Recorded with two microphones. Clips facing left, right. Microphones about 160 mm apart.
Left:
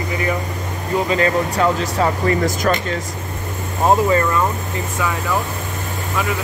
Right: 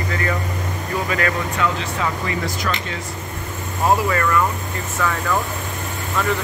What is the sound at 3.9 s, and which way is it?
Speech, 25° left (ahead or behind).